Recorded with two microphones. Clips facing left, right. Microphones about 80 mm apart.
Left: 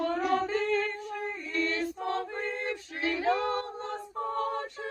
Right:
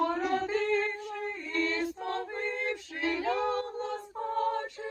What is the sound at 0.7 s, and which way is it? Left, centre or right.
Female singing, right.